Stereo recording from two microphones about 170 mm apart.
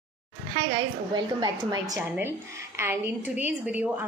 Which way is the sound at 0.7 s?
25° right (ahead or behind).